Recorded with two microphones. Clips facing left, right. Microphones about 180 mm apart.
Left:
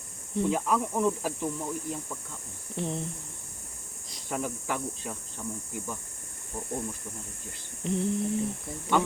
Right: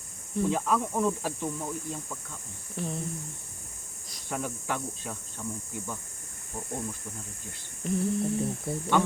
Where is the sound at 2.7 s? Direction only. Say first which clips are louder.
Left 2 dB; 25° left (ahead or behind).